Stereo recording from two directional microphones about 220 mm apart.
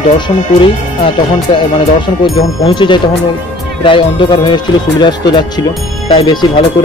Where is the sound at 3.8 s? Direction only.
25° left (ahead or behind).